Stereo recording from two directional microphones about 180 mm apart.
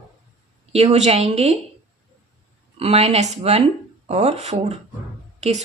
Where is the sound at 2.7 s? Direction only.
35° right (ahead or behind).